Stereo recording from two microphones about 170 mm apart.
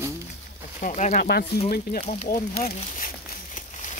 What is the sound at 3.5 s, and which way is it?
Crumpling, 45° left (ahead or behind).